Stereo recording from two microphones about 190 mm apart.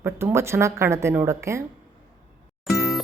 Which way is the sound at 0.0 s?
10° right (ahead or behind).